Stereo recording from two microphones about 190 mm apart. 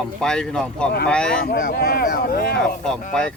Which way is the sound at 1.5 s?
55° left (ahead or behind).